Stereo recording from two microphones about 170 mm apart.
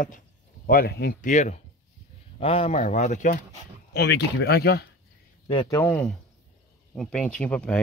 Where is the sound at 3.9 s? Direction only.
80° left.